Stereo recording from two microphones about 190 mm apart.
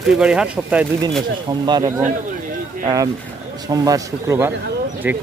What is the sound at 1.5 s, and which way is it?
Speech, 20° right (ahead or behind).